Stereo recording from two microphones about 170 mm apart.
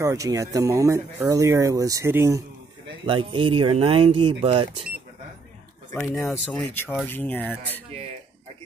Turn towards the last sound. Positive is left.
turn(degrees=10)  # may be behind; listen again after turning